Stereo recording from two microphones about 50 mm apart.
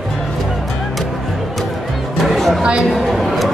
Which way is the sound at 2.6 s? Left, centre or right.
Centre.